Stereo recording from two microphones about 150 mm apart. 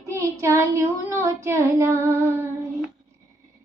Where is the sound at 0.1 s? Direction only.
20° right (ahead or behind).